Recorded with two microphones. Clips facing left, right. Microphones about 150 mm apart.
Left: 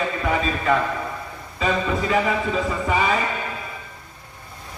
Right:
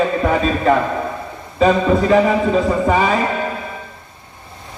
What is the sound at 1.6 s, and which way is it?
Speech, 40° right (ahead or behind).